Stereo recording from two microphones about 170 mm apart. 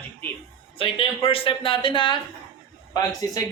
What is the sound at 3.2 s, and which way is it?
Speech, 20° left (ahead or behind).